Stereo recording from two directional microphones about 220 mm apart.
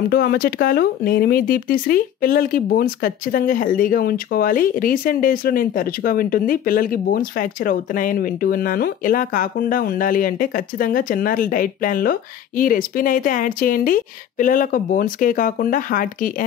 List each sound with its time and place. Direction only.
0.1 s speech: 45° left (ahead or behind)